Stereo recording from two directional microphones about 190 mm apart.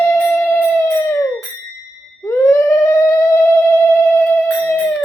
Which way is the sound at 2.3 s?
15° left (ahead or behind).